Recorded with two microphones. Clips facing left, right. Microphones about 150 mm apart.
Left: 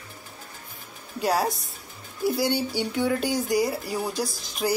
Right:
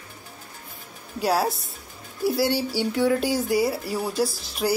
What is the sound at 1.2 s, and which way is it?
Speech, 5° right (ahead or behind).